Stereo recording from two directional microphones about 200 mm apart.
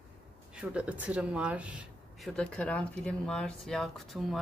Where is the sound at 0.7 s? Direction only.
5° right (ahead or behind).